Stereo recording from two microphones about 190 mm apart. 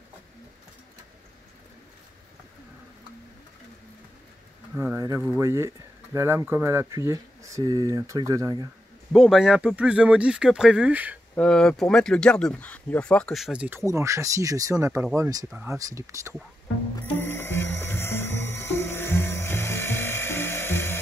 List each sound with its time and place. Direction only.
4.7 s speech: 10° right (ahead or behind)
9.1 s speech: centre (ahead or behind)
11.3 s speech: 5° left (ahead or behind); by 15.4 s 20° right (ahead or behind)
15.5 s speech: 5° right (ahead or behind)
17.0 s music: 10° left (ahead or behind)